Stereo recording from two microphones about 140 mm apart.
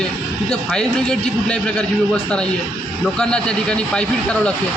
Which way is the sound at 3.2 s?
5° left (ahead or behind).